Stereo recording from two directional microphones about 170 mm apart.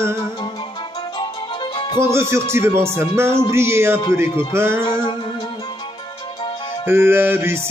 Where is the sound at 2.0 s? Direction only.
15° right (ahead or behind).